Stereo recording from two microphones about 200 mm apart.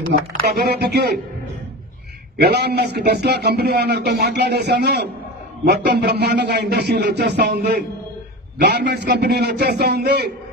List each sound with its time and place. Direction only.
0.3 s speech: 55° right (ahead or behind)
2.3 s a man's voice: 55° right (ahead or behind)